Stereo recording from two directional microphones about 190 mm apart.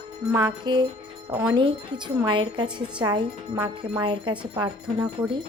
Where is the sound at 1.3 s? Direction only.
5° right (ahead or behind).